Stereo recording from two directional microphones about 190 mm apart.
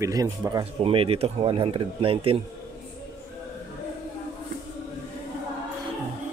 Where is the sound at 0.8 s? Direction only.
30° right (ahead or behind).